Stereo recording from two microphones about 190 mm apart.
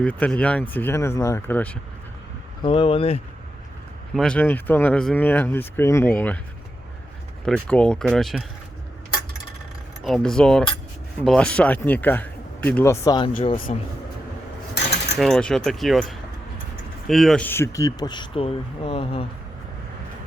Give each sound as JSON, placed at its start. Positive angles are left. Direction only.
{"t": 0.0, "sound": "speech", "side_deg": 5}
{"t": 2.6, "sound": "speech", "side_deg": 30}
{"t": 4.1, "sound": "speech", "side_deg": 5}
{"t": 7.4, "sound": "speech", "side_deg": 5}
{"t": 10.0, "sound": "speech", "side_deg": 0}
{"t": 13.3, "sound": "speech", "side_deg": 40}
{"t": 15.2, "sound": "speech", "side_deg": 5}